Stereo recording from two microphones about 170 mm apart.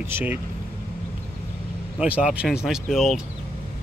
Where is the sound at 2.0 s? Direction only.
5° right (ahead or behind).